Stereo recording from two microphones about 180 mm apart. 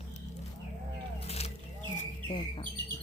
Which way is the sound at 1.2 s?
35° left (ahead or behind).